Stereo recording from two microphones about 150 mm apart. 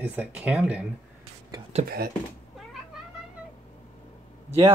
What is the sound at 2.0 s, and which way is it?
Speech, 90° right.